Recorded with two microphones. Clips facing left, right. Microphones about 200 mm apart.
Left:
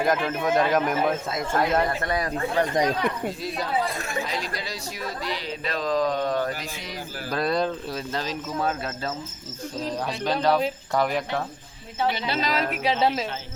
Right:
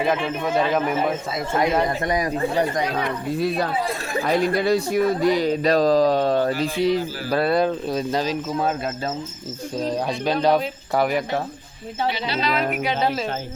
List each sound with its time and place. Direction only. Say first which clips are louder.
0.0 s a man's voice: right 1 dB; 5° right (ahead or behind)
2.0 s speech: right 4 dB; 15° right (ahead or behind)
3.3 s a man's voice: right 5 dB; 60° right (ahead or behind); by 7.0 s 30° right (ahead or behind)
7.3 s a man's voice: right 4 dB; 5° right (ahead or behind)
7.6 s speech: right 6 dB; 15° right (ahead or behind)
9.9 s a man's voice: right 3 dB; 10° right (ahead or behind)
12.4 s music: right 4 dB; 40° left (ahead or behind)